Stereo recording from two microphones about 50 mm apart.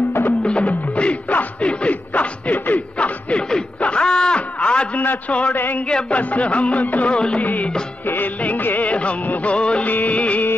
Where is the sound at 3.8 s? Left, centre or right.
Centre.